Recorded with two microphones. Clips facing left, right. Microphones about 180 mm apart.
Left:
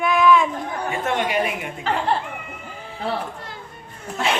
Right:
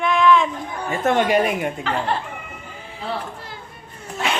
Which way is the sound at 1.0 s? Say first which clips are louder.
Right 6 dB; 40° right (ahead or behind).